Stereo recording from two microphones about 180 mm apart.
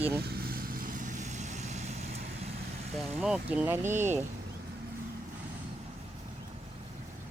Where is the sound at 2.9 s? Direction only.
Centre (ahead or behind).